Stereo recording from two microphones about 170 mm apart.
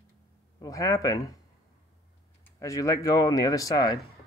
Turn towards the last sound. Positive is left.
turn(degrees=20)  # may be behind; listen again after turning